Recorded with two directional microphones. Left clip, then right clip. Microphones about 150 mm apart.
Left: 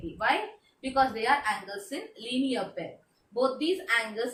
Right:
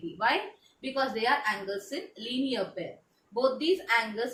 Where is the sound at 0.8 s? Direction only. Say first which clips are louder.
Left 3 dB; 20° left (ahead or behind).